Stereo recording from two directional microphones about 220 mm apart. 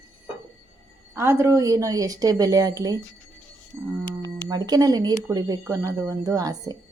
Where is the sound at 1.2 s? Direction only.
10° right (ahead or behind).